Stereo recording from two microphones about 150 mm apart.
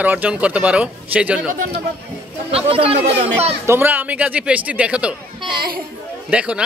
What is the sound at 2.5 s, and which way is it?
Speech, 40° right (ahead or behind).